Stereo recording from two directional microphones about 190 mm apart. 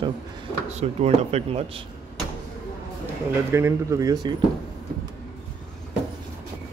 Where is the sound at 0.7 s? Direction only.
35° right (ahead or behind).